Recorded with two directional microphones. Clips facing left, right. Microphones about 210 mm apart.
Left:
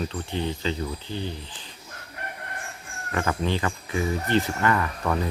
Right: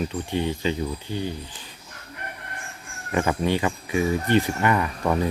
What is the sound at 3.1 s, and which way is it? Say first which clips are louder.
Speech: right 3 dB; 15° right (ahead or behind).